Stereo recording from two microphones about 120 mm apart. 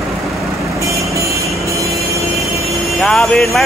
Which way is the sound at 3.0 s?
5° left (ahead or behind).